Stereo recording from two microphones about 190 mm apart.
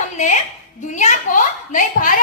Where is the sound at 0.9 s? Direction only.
40° left (ahead or behind).